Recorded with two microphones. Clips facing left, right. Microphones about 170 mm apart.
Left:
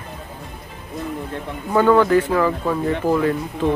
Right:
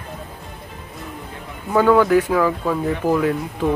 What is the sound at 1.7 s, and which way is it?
Speech, 5° right (ahead or behind).